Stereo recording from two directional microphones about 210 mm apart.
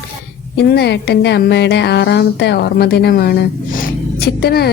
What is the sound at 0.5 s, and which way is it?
A woman's voice, 50° left (ahead or behind).